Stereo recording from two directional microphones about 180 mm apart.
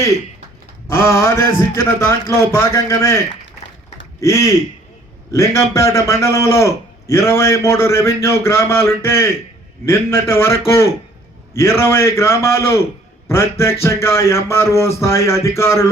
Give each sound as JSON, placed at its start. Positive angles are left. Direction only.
{"t": 0.9, "sound": "a man's voice", "side_deg": 15}
{"t": 4.2, "sound": "a man's voice", "side_deg": 15}